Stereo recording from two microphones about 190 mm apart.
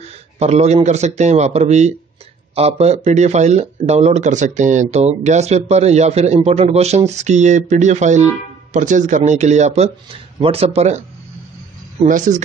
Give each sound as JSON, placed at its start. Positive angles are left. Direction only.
{"t": 0.0, "sound": "speech", "side_deg": -35}
{"t": 12.1, "sound": "speech", "side_deg": -40}